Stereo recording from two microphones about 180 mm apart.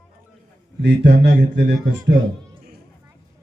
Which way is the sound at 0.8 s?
75° right (ahead or behind).